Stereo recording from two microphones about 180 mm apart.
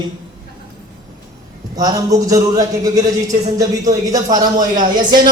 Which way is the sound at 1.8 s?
20° right (ahead or behind).